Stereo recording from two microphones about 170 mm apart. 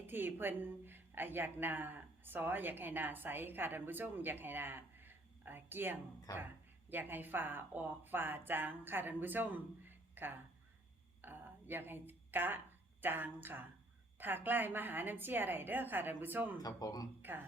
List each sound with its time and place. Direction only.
0.0 s a woman's voice: 10° right (ahead or behind)
11.2 s a sound: 10° right (ahead or behind)
13.0 s a woman's voice: 10° right (ahead or behind)
16.6 s speech: 20° left (ahead or behind)